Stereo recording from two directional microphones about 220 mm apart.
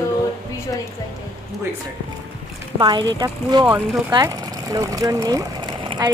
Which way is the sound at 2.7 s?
20° right (ahead or behind).